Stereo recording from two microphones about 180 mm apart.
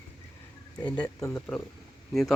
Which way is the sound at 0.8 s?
5° left (ahead or behind).